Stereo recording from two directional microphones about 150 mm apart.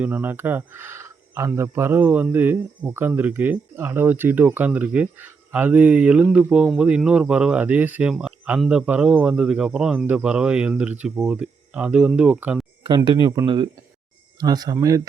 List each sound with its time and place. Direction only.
0.0 s speech: 10° right (ahead or behind)
13.1 s speech: 30° right (ahead or behind)